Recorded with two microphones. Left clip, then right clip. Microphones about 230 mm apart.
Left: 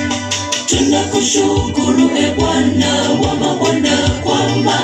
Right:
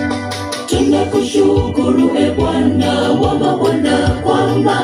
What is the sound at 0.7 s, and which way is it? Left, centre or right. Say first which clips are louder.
Music: right 1 dB; left.